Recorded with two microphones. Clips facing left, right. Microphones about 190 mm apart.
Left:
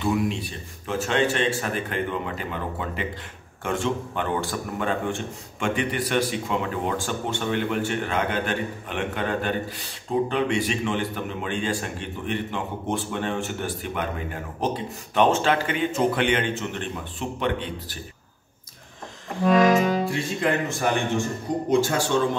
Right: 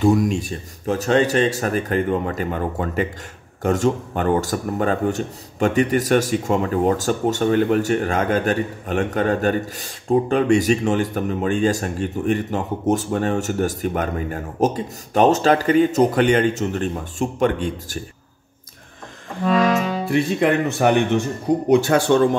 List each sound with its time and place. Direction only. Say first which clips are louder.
0.0 s a man's voice: right 7 dB; 40° right (ahead or behind)
20.1 s speech: right 7 dB; 65° right (ahead or behind)